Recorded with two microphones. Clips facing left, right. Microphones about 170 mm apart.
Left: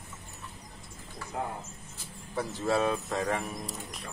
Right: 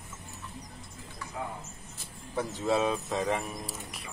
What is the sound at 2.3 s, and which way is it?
Speech, centre (ahead or behind).